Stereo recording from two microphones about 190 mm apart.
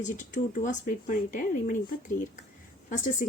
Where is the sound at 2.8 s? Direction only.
40° left (ahead or behind).